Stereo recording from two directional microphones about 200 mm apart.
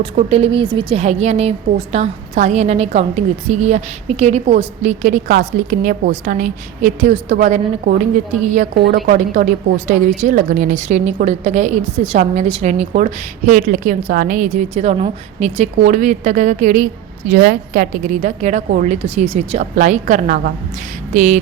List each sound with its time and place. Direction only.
0.0 s a woman's voice: 30° right (ahead or behind)
8.7 s a woman's voice: 55° right (ahead or behind)
9.0 s a woman's voice: 40° right (ahead or behind)
17.3 s a woman's voice: 50° right (ahead or behind)